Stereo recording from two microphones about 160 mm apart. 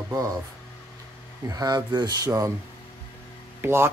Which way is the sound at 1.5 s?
25° right (ahead or behind).